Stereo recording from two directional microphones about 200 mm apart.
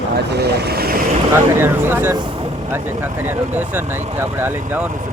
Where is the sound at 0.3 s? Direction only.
55° right (ahead or behind).